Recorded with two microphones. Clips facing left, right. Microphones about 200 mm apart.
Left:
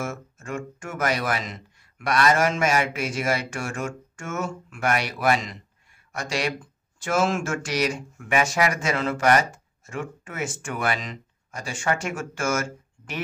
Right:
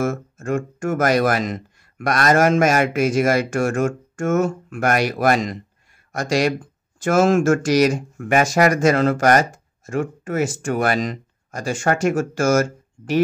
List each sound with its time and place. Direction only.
0.0 s speech: 45° right (ahead or behind)